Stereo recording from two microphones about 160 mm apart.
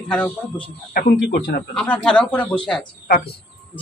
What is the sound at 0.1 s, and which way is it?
Speech, 5° left (ahead or behind).